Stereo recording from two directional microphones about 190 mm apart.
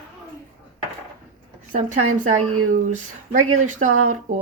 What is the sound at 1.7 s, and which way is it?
Speech, 40° right (ahead or behind).